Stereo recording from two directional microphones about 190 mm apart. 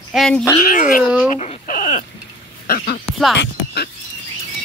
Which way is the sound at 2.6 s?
50° left (ahead or behind).